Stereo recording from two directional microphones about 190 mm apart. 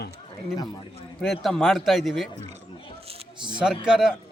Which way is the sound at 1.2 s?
5° left (ahead or behind).